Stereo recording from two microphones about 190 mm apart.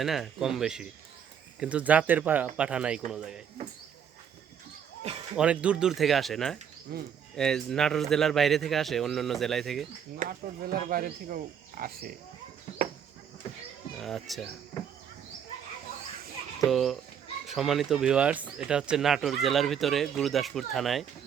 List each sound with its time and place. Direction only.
0.0 s speech: centre (ahead or behind)
5.4 s speech: 5° right (ahead or behind)
6.9 s speech: 55° right (ahead or behind)
7.3 s speech: 5° left (ahead or behind)
10.2 s speech: 45° right (ahead or behind)
14.0 s speech: centre (ahead or behind)
16.6 s speech: centre (ahead or behind)